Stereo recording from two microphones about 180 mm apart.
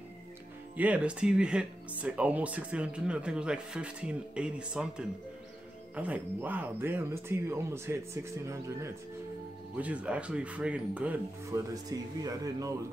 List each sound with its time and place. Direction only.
0.7 s speech: 5° right (ahead or behind)